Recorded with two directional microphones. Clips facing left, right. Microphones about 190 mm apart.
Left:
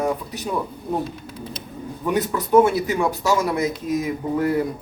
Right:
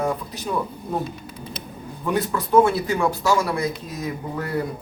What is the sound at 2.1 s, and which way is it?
Speech, 20° left (ahead or behind).